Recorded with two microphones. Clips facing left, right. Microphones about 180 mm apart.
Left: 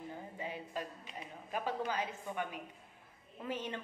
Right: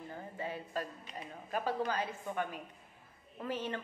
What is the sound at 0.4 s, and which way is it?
A woman's voice, 15° left (ahead or behind).